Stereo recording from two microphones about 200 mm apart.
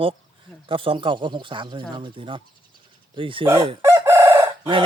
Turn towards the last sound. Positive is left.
turn(degrees=-25)  # may be behind; listen again after turning